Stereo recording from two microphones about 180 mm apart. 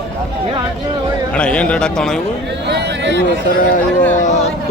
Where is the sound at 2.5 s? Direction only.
70° right (ahead or behind).